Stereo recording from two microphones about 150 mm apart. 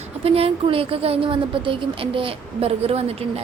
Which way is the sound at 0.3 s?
40° right (ahead or behind).